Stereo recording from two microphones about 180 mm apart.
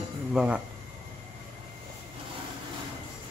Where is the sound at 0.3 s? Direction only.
5° right (ahead or behind).